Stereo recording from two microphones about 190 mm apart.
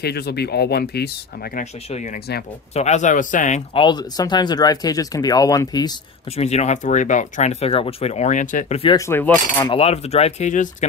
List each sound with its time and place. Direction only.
0.0 s speech: 60° left (ahead or behind)
1.6 s speech: 40° left (ahead or behind)
3.7 s speech: 25° left (ahead or behind)
6.3 s speech: 35° left (ahead or behind)
8.9 s coin: 15° left (ahead or behind)
9.7 s speech: 35° left (ahead or behind)